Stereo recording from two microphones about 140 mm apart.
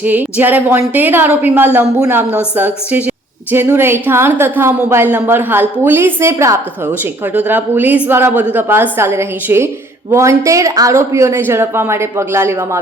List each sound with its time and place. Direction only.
0.0 s a woman's voice: 10° right (ahead or behind)